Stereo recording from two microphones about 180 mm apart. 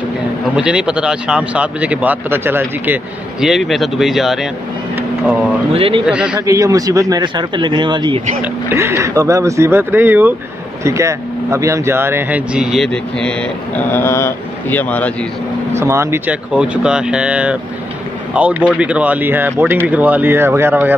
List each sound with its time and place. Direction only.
0.6 s speech: 5° right (ahead or behind)
5.7 s speech: 30° right (ahead or behind)
6.0 s speech: 5° right (ahead or behind)
6.4 s speech: 20° right (ahead or behind); by 15.1 s 10° left (ahead or behind)
15.8 s speech: 15° right (ahead or behind)